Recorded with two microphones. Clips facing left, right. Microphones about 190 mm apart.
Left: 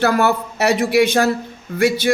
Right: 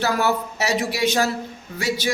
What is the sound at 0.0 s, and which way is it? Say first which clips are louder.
Speech: left 5 dB; 60° left (ahead or behind).